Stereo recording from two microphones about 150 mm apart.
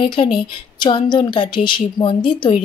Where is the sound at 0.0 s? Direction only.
35° left (ahead or behind).